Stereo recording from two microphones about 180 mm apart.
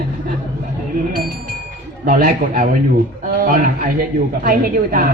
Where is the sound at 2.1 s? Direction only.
50° right (ahead or behind).